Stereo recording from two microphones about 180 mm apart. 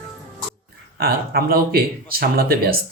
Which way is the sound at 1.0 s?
55° right (ahead or behind).